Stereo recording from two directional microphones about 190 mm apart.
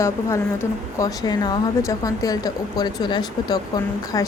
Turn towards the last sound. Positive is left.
turn(degrees=20)  # may be behind; listen again after turning